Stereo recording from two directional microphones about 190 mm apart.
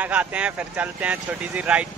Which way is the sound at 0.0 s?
5° right (ahead or behind).